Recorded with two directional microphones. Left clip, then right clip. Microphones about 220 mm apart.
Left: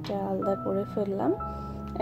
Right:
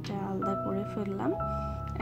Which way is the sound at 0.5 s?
25° right (ahead or behind).